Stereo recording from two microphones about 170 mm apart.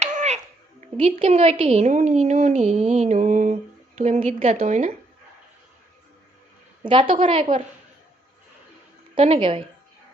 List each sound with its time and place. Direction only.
0.0 s music: 40° right (ahead or behind)
0.8 s speech: 40° right (ahead or behind)
6.8 s a woman's voice: 30° right (ahead or behind)
9.1 s speech: 35° right (ahead or behind)